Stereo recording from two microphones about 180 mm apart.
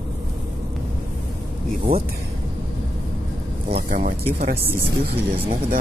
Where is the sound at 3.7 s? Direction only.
60° right (ahead or behind).